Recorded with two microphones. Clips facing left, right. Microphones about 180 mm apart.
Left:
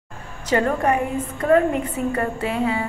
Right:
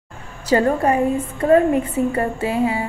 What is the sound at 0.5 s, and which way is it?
A woman's voice, 30° right (ahead or behind).